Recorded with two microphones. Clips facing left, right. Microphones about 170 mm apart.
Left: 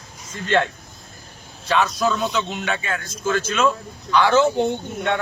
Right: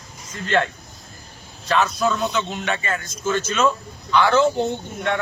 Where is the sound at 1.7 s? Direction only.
Centre (ahead or behind).